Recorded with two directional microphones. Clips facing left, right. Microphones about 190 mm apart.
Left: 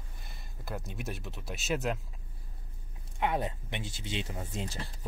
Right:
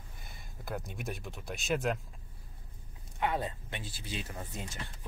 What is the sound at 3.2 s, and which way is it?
Speech, 20° left (ahead or behind).